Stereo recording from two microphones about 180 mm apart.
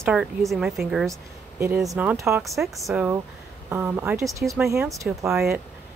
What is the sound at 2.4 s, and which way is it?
Speech, centre (ahead or behind).